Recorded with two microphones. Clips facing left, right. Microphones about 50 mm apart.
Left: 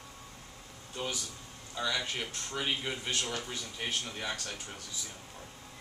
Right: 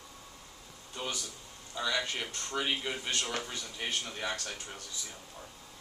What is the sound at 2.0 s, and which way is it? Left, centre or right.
Speech, centre.